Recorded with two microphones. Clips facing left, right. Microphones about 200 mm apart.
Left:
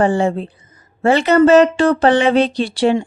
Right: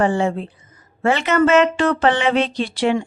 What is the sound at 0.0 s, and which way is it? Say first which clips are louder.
Speech: left 3 dB; 35° left (ahead or behind).